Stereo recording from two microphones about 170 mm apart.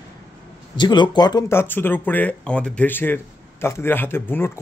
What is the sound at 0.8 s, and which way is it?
Speech, 25° left (ahead or behind).